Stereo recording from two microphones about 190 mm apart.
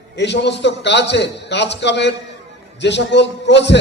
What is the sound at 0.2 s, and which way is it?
A man's voice, 65° left (ahead or behind).